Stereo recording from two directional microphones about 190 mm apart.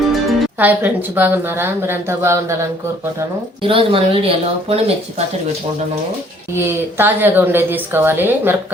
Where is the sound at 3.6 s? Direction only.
30° right (ahead or behind).